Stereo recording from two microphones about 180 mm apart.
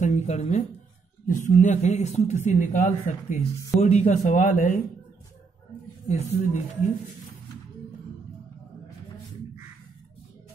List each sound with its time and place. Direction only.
0.0 s speech: 40° left (ahead or behind)
6.0 s speech: 40° left (ahead or behind)